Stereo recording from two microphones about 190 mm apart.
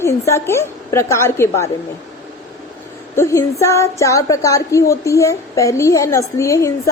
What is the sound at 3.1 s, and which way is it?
A woman's voice, 15° left (ahead or behind).